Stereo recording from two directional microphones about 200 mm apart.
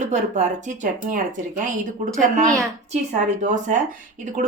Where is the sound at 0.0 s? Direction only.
35° right (ahead or behind).